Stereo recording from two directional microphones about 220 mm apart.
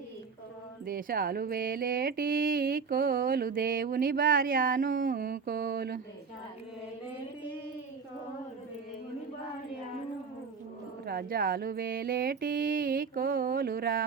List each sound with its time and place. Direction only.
0.9 s mantra: 40° right (ahead or behind)
11.0 s mantra: 45° right (ahead or behind)